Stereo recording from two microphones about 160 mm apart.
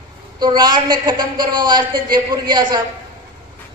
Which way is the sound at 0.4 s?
25° right (ahead or behind).